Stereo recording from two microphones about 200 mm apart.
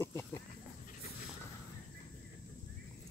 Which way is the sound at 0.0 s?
10° left (ahead or behind).